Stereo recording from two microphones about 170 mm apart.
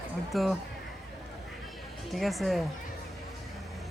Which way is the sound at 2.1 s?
Centre (ahead or behind).